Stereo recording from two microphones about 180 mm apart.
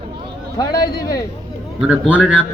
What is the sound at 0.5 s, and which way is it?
Speech, 20° left (ahead or behind).